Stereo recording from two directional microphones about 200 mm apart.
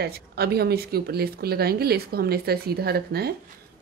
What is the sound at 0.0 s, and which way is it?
Speech, 50° right (ahead or behind).